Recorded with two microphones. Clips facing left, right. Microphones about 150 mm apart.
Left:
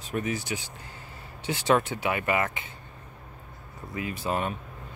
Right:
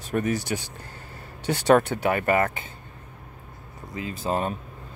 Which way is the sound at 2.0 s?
45° right (ahead or behind).